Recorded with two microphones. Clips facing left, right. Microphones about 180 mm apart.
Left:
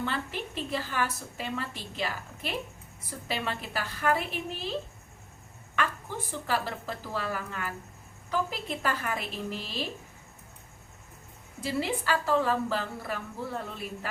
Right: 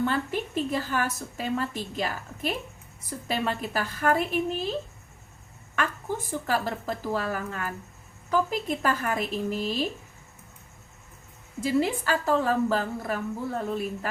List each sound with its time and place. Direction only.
0.0 s a woman's voice: 45° right (ahead or behind)
5.7 s a woman's voice: 45° right (ahead or behind)
11.6 s a woman's voice: 45° right (ahead or behind)